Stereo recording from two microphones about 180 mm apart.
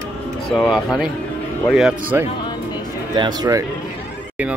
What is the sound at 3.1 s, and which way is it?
Speech, 25° right (ahead or behind).